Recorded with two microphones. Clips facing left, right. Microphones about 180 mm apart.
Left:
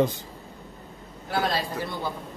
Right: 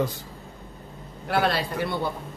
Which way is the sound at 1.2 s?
70° right (ahead or behind).